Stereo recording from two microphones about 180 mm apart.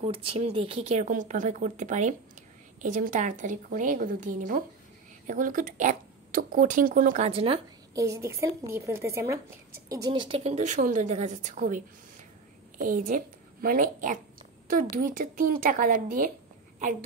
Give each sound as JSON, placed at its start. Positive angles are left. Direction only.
{"t": 0.0, "sound": "speech", "side_deg": -35}
{"t": 7.9, "sound": "a woman's voice", "side_deg": -15}